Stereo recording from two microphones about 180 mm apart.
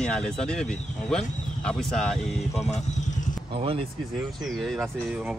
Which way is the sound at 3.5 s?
30° right (ahead or behind).